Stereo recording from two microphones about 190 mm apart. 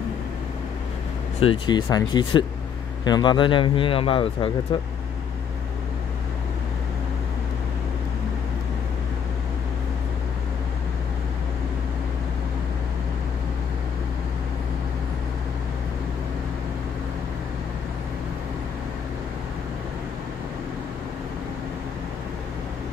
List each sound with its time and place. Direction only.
1.4 s speech: 25° left (ahead or behind)